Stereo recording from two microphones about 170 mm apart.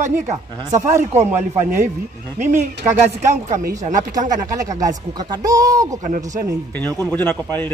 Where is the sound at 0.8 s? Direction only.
15° right (ahead or behind).